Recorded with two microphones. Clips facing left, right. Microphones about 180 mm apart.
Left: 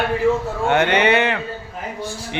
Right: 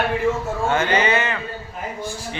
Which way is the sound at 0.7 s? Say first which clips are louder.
Left 4 dB; 70° left (ahead or behind).